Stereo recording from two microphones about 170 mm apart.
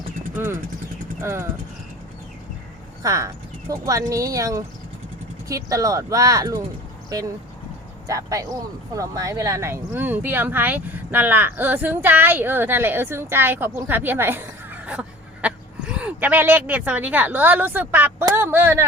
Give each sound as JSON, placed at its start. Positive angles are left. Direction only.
{"t": 0.3, "sound": "speech", "side_deg": -15}
{"t": 3.0, "sound": "speech", "side_deg": -20}